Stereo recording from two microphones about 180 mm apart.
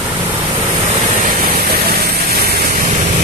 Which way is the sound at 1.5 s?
60° right (ahead or behind).